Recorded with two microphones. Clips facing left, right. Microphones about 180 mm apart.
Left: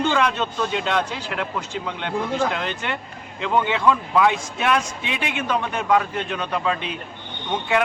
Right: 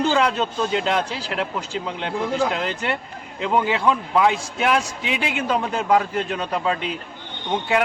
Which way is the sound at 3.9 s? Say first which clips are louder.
Left 1 dB; 20° right (ahead or behind).